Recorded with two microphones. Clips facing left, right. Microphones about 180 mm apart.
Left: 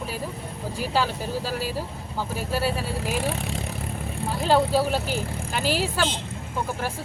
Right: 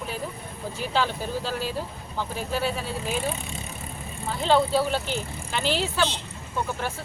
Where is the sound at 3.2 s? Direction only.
75° left (ahead or behind).